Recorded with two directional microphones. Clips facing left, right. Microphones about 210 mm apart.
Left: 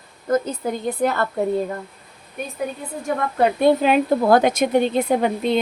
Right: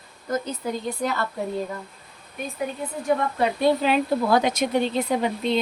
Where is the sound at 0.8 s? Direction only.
55° left (ahead or behind).